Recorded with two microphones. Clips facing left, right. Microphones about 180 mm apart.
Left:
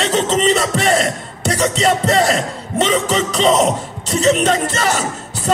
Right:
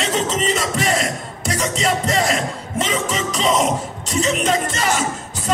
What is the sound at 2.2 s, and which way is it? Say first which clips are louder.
Speech: left 4 dB; 35° left (ahead or behind).